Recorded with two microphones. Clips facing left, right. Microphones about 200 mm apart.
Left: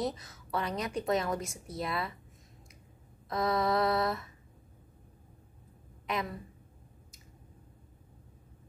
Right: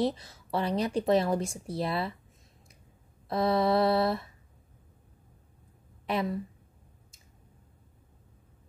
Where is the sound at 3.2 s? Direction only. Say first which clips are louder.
Right 4 dB; 30° right (ahead or behind).